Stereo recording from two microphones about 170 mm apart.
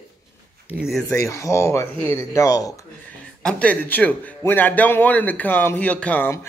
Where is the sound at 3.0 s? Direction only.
10° left (ahead or behind).